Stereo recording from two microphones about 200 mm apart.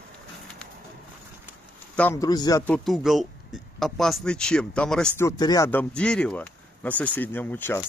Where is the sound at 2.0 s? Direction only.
15° left (ahead or behind).